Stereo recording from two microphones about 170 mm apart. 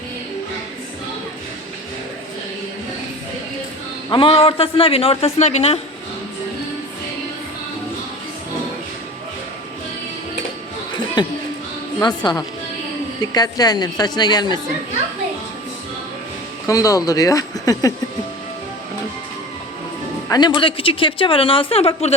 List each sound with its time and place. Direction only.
4.1 s speech: 30° left (ahead or behind)
10.9 s a sound: 25° left (ahead or behind)
11.9 s a woman's voice: 25° left (ahead or behind)
16.6 s a woman's voice: 20° left (ahead or behind)
20.2 s speech: 25° left (ahead or behind)